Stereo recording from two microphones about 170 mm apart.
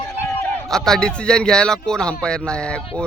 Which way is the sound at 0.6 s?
5° left (ahead or behind).